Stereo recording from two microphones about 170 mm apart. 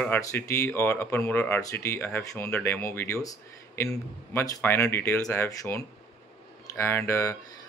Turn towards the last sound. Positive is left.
turn(degrees=15)  # may be behind; listen again after turning